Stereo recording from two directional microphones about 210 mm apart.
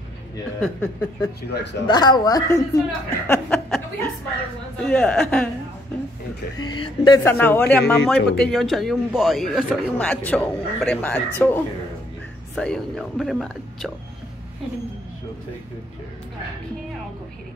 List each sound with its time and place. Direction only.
0.6 s speech: 10° left (ahead or behind)
1.5 s speech: 55° left (ahead or behind)
1.9 s a woman's voice: 20° left (ahead or behind); by 5.5 s 5° left (ahead or behind)
6.6 s a woman's voice: 20° left (ahead or behind)
7.3 s a man's voice: 10° left (ahead or behind)